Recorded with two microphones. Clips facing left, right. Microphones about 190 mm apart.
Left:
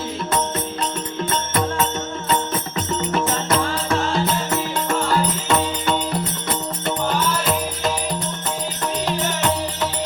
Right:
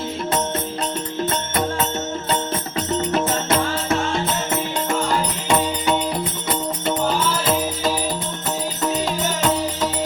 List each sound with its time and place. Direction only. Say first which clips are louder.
2.7 s music: right 2 dB; 30° right (ahead or behind)
4.9 s music: left 2 dB; 15° right (ahead or behind)